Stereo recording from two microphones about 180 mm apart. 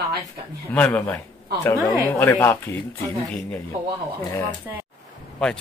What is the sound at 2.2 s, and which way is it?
Speech, 10° left (ahead or behind).